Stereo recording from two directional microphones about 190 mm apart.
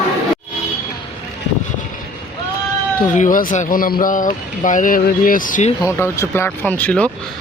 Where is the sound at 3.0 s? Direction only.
45° left (ahead or behind).